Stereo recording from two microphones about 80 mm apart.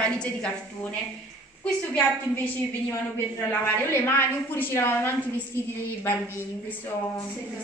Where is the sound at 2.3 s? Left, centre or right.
Left.